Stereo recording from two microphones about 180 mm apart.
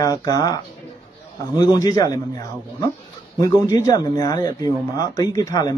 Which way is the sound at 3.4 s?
15° left (ahead or behind).